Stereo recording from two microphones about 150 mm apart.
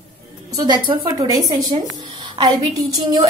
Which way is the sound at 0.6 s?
30° right (ahead or behind).